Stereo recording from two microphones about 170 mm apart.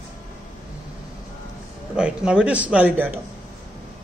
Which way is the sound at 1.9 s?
5° right (ahead or behind).